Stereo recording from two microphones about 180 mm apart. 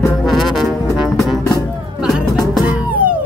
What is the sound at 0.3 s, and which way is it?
Music, centre (ahead or behind).